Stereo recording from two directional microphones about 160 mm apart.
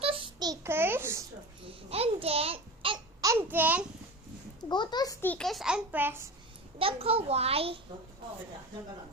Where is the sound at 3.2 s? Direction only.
15° right (ahead or behind).